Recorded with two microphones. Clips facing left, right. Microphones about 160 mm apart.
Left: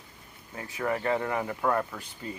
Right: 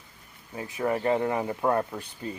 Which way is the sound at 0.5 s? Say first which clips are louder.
Right 3 dB; 20° right (ahead or behind).